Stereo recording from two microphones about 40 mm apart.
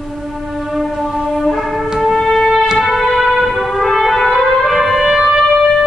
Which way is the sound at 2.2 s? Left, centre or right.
Centre.